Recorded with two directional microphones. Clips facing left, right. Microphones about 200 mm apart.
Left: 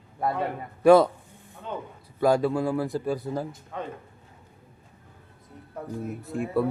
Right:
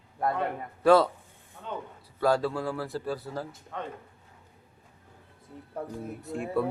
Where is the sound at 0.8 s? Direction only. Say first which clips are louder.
Left 4 dB; 15° left (ahead or behind).